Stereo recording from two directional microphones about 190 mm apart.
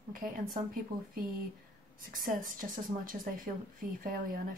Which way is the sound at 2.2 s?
45° right (ahead or behind).